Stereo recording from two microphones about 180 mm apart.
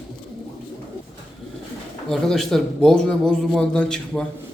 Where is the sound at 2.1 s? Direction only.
Centre (ahead or behind).